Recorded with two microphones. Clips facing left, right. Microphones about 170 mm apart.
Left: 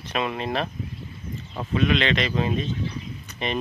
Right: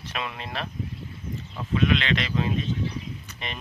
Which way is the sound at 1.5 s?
20° left (ahead or behind).